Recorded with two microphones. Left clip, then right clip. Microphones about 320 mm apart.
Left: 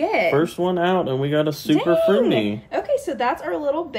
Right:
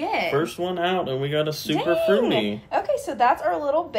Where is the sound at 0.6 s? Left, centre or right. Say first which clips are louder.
Left 4 dB; centre.